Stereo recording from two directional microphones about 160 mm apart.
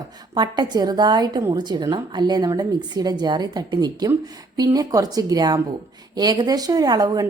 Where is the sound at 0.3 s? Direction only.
25° right (ahead or behind).